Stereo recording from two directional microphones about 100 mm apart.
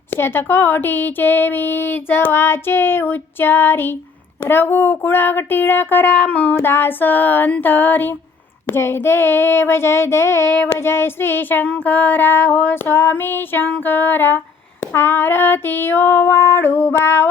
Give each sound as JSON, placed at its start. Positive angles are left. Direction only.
{"t": 0.1, "sound": "female singing", "side_deg": 25}